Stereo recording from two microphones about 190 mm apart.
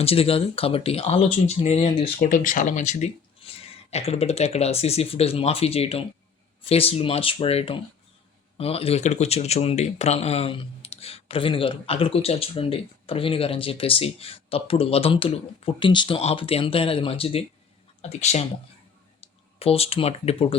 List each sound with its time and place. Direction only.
0.0 s speech: 30° left (ahead or behind)
19.5 s speech: 30° left (ahead or behind)